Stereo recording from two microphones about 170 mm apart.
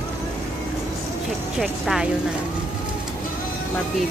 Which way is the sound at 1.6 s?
Centre (ahead or behind).